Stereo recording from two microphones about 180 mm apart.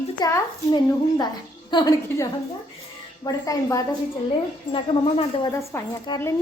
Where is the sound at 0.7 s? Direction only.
25° left (ahead or behind).